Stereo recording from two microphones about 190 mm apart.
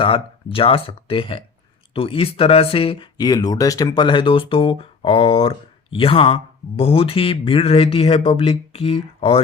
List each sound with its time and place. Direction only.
0.5 s speech: 30° left (ahead or behind)